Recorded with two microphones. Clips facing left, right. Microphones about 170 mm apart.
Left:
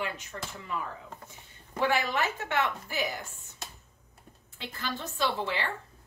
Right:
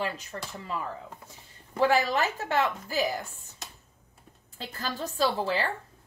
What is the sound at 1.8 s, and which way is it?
A woman's voice, 35° right (ahead or behind).